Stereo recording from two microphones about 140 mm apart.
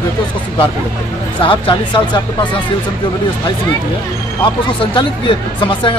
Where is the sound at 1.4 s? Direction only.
40° left (ahead or behind).